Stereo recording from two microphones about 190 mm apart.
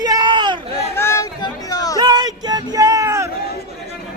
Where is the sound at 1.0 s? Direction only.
15° left (ahead or behind).